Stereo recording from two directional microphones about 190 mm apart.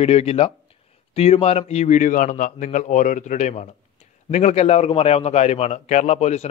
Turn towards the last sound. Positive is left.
turn(degrees=35)  # may be behind; listen again after turning